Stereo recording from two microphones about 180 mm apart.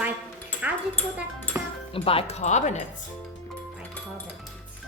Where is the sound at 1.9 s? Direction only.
30° left (ahead or behind).